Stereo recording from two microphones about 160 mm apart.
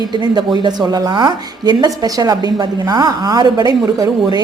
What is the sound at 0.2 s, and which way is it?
Speech, 25° right (ahead or behind).